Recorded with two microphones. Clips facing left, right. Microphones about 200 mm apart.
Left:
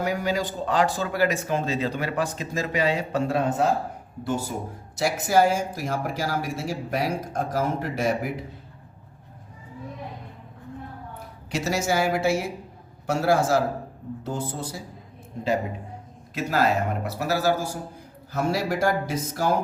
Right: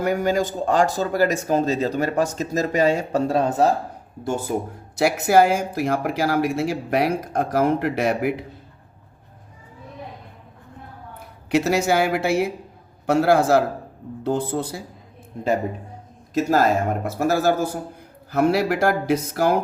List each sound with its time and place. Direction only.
0.0 s speech: 50° right (ahead or behind)
4.2 s speech: 50° right (ahead or behind)
4.9 s speech: 65° right (ahead or behind)
11.5 s speech: 60° right (ahead or behind)
16.3 s speech: 45° right (ahead or behind)
18.3 s speech: 65° right (ahead or behind)